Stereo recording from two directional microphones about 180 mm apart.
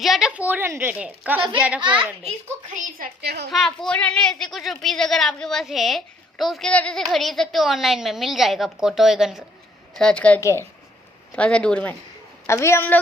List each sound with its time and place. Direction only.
0.0 s a woman's voice: centre (ahead or behind)
1.8 s a child's voice: 25° right (ahead or behind)
2.2 s a woman's voice: 45° right (ahead or behind)
3.2 s a woman's voice: 65° right (ahead or behind)
3.5 s a woman's voice: centre (ahead or behind)